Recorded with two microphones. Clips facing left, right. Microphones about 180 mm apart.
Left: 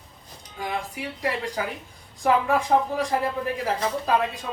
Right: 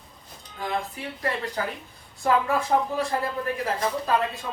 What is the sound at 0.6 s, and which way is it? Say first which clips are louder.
Speech: even; 15° left (ahead or behind).